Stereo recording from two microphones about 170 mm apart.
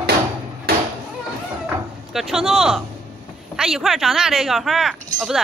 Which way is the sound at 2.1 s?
Centre (ahead or behind).